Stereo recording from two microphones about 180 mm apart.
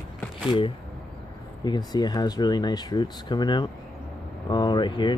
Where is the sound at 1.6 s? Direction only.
25° left (ahead or behind).